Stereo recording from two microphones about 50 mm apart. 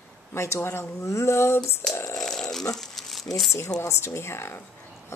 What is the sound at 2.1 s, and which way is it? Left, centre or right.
Dog, centre.